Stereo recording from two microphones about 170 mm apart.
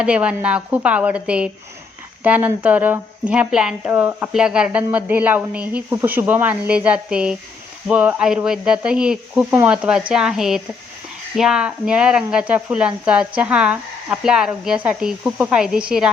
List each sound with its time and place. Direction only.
0.0 s speech: 5° right (ahead or behind)